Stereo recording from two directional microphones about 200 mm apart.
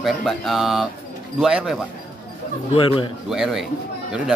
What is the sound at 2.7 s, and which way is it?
Speech, 25° left (ahead or behind).